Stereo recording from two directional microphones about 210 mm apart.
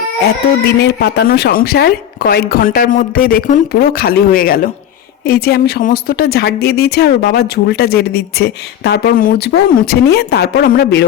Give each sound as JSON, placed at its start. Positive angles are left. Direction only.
{"t": 0.8, "sound": "speech", "side_deg": 50}